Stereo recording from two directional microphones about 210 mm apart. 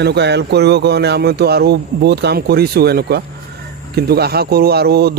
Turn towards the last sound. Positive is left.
turn(degrees=-50)  # may be behind; listen again after turning